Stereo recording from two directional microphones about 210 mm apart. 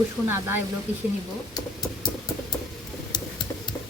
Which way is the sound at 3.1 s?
20° left (ahead or behind).